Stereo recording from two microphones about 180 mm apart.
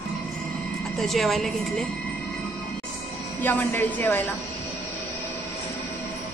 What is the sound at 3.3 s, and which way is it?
Speech, 10° left (ahead or behind).